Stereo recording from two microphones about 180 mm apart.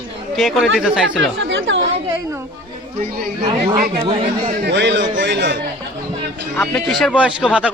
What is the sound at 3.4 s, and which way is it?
Speech, 40° right (ahead or behind).